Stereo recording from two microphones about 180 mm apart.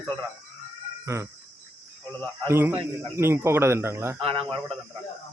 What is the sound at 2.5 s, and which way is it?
A man's voice, 10° right (ahead or behind).